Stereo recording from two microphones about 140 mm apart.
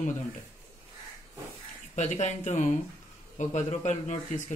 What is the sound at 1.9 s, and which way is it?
Speech, 60° left (ahead or behind).